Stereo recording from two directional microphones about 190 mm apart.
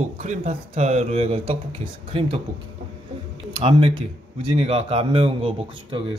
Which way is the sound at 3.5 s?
25° right (ahead or behind).